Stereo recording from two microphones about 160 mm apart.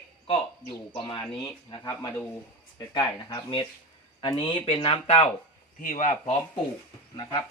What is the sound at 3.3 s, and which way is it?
Speech, 30° left (ahead or behind).